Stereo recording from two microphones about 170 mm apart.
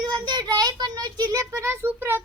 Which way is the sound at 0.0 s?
25° right (ahead or behind).